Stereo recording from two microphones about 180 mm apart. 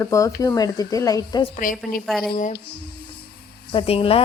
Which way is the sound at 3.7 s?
30° left (ahead or behind).